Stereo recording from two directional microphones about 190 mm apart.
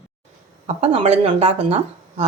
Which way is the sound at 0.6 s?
35° right (ahead or behind).